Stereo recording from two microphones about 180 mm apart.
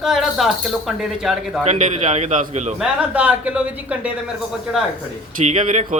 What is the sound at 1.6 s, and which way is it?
A man's voice, 40° right (ahead or behind).